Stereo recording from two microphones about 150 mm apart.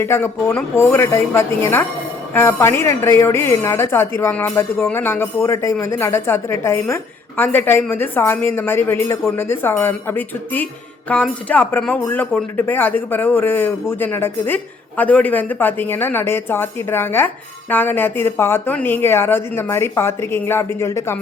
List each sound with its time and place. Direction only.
0.0 s speech: 15° left (ahead or behind)